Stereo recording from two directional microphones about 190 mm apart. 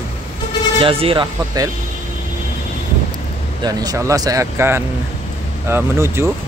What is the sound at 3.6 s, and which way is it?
Speech, 15° right (ahead or behind).